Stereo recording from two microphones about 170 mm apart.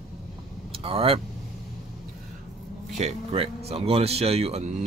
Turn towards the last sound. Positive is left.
turn(degrees=-35)  # may be behind; listen again after turning